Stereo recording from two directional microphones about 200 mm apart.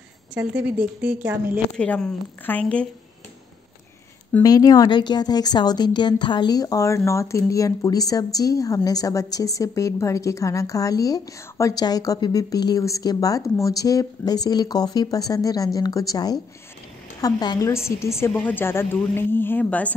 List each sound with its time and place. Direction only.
0.3 s speech: 5° right (ahead or behind)
1.8 s a woman's voice: 5° left (ahead or behind)
4.4 s a woman's voice: 20° left (ahead or behind)